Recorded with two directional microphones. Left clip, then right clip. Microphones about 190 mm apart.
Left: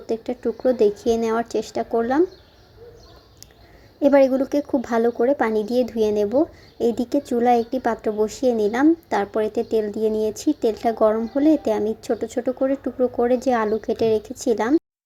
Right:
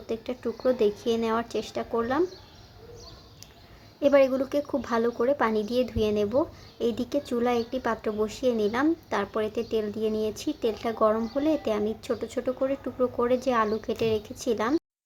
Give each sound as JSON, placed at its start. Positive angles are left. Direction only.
{"t": 0.1, "sound": "speech", "side_deg": 20}
{"t": 4.0, "sound": "a woman's voice", "side_deg": 15}